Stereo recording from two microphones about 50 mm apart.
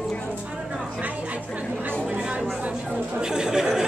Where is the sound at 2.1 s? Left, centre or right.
Centre.